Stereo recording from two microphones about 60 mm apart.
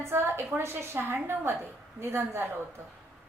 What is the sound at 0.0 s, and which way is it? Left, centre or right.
A woman's voice, right.